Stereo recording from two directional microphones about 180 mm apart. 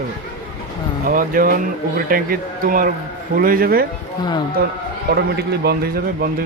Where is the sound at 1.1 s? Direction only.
50° right (ahead or behind).